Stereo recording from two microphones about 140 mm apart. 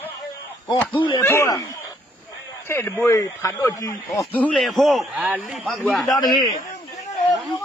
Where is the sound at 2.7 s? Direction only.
20° left (ahead or behind).